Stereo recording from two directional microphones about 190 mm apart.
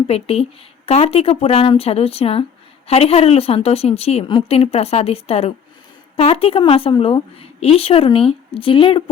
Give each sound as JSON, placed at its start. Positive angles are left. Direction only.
{"t": 0.1, "sound": "a woman's voice", "side_deg": 30}